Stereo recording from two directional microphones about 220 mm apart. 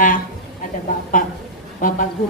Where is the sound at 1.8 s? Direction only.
40° left (ahead or behind).